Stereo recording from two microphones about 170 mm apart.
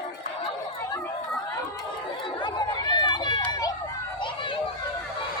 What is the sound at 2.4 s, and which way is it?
Speech, 25° left (ahead or behind).